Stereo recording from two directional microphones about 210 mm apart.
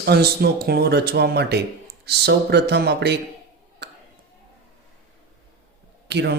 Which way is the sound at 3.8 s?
55° right (ahead or behind).